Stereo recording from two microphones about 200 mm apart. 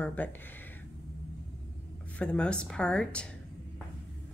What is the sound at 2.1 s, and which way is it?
Speech, 5° left (ahead or behind).